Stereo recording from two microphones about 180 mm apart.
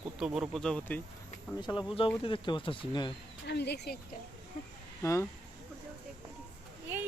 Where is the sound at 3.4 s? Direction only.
65° left (ahead or behind).